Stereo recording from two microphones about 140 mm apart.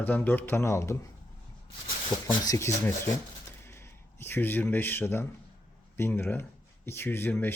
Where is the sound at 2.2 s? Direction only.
25° left (ahead or behind).